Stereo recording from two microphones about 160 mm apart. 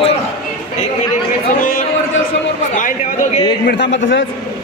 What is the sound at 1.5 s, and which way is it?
A man's voice, 60° left (ahead or behind).